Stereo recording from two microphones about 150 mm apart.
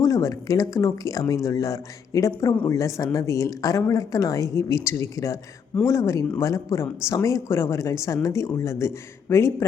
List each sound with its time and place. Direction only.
0.0 s speech: 20° left (ahead or behind)